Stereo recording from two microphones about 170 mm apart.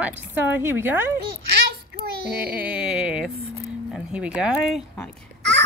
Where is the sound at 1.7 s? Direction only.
65° right (ahead or behind).